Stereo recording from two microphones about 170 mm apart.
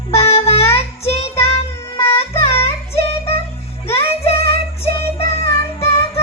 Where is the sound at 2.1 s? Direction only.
35° left (ahead or behind).